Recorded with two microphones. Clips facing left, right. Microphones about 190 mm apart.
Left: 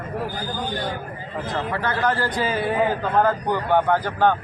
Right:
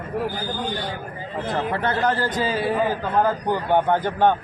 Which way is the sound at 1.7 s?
25° right (ahead or behind).